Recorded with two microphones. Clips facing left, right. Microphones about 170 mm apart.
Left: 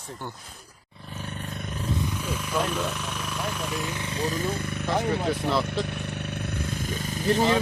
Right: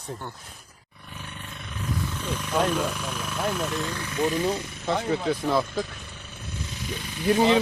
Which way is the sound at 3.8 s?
20° left (ahead or behind).